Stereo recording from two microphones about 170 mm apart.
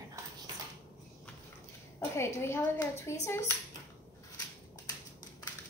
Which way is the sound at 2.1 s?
15° left (ahead or behind).